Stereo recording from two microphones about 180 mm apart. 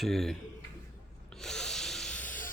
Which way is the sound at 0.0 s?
Centre (ahead or behind).